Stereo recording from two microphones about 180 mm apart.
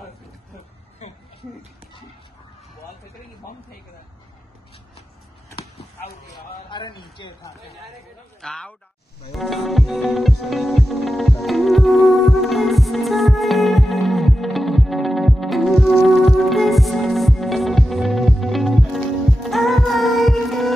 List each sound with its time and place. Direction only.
1.0 s a sound: 40° left (ahead or behind)
6.2 s a man's voice: 25° left (ahead or behind)
8.4 s speech: 5° left (ahead or behind)
9.3 s music: centre (ahead or behind)